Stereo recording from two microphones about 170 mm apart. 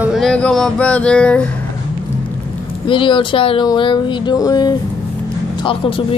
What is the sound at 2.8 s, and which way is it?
Speech, 30° left (ahead or behind).